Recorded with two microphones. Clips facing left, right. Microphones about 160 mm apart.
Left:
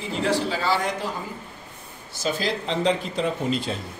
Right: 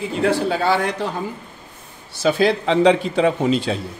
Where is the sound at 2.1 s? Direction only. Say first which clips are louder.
Right 9 dB; 65° right (ahead or behind); by 3.8 s 85° right.